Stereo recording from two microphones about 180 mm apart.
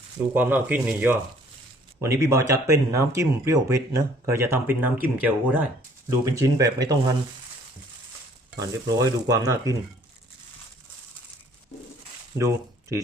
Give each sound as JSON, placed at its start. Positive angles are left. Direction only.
{"t": 0.3, "sound": "speech", "side_deg": -10}
{"t": 8.5, "sound": "speech", "side_deg": -20}
{"t": 12.4, "sound": "speech", "side_deg": -15}